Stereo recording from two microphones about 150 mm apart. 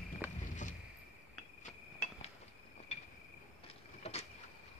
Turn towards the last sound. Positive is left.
turn(degrees=45)  # may be behind; listen again after turning